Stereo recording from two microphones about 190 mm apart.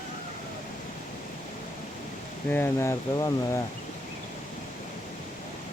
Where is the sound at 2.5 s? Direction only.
15° left (ahead or behind).